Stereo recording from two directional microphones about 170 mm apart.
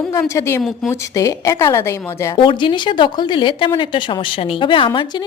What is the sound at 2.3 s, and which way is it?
Speech, 30° left (ahead or behind).